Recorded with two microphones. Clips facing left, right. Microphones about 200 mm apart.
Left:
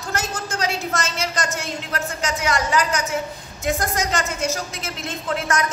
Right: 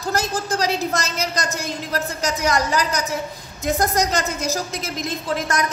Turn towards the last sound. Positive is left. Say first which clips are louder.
# right 1 dB
turn(degrees=-40)  # may be behind; listen again after turning